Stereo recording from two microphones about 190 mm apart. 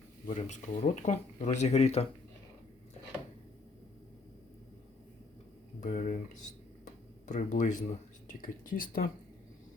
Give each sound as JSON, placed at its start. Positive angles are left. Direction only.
{"t": 0.3, "sound": "speech", "side_deg": 40}
{"t": 5.8, "sound": "speech", "side_deg": 40}